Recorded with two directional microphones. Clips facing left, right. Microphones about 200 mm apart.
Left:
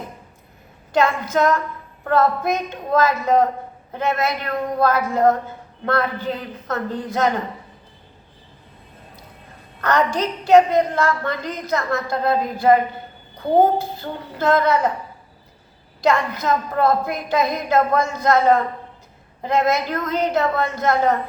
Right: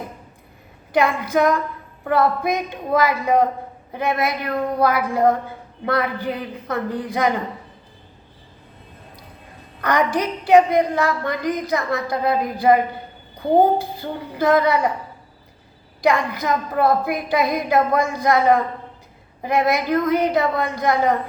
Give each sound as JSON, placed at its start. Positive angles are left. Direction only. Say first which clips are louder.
{"t": 0.9, "sound": "a woman's voice", "louder": "even", "side_deg": -15}
{"t": 9.8, "sound": "a woman's voice", "louder": "even", "side_deg": -15}
{"t": 16.0, "sound": "a woman's voice", "louder": "even", "side_deg": -15}